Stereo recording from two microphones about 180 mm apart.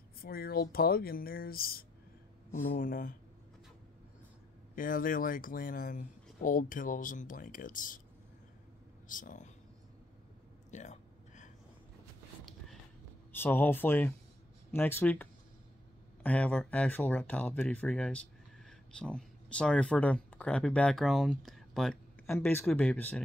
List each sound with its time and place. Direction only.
0.2 s speech: 55° left (ahead or behind)
4.7 s speech: 50° left (ahead or behind)
9.1 s speech: 45° left (ahead or behind)
10.7 s a sound: 40° left (ahead or behind)
13.3 s speech: 10° left (ahead or behind)